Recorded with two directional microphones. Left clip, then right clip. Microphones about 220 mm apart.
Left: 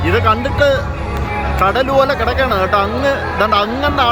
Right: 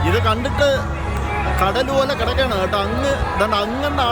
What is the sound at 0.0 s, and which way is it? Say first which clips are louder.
Speech: left 5 dB; 10° right (ahead or behind).